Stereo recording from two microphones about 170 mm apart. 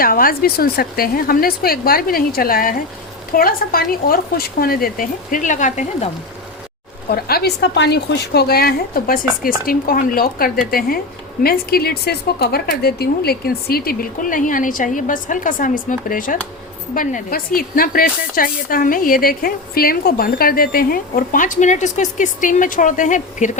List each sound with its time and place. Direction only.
0.0 s speech: 60° left (ahead or behind)
7.1 s a woman's voice: 65° left (ahead or behind); by 23.5 s 50° left (ahead or behind)